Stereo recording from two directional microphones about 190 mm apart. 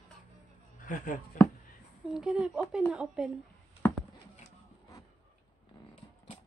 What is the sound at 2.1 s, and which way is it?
Speech, 5° right (ahead or behind).